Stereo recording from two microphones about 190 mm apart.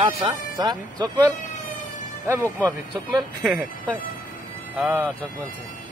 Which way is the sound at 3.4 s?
5° right (ahead or behind).